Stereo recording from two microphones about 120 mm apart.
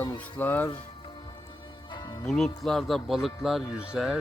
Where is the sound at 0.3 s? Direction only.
15° left (ahead or behind).